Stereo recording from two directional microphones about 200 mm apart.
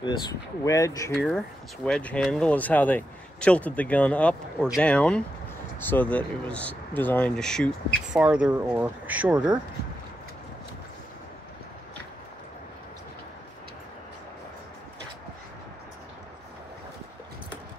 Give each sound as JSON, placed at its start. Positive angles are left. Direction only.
{"t": 0.7, "sound": "speech", "side_deg": 15}
{"t": 1.1, "sound": "speech", "side_deg": 0}